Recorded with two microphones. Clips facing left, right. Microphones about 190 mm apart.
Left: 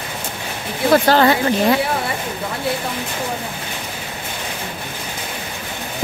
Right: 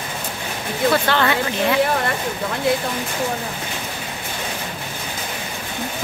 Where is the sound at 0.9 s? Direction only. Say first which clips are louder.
Left 8 dB; 40° left (ahead or behind).